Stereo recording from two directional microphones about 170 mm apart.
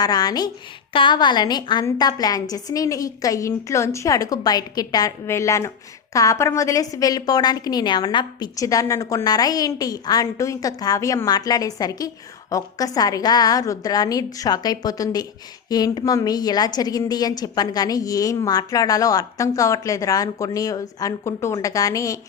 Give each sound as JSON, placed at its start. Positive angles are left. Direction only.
{"t": 0.0, "sound": "a woman's voice", "side_deg": 20}